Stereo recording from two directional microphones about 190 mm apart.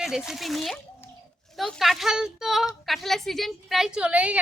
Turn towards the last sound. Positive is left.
turn(degrees=-5)  # may be behind; listen again after turning